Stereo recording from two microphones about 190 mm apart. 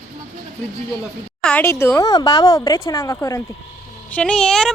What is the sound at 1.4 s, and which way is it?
Speech, 10° left (ahead or behind).